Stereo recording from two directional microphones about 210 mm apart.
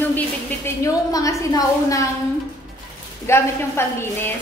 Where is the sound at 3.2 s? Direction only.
10° left (ahead or behind).